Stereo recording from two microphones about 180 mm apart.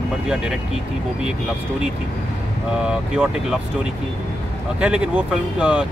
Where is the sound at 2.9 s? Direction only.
5° right (ahead or behind).